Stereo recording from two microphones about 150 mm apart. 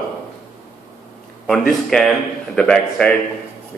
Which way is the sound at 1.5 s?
5° left (ahead or behind).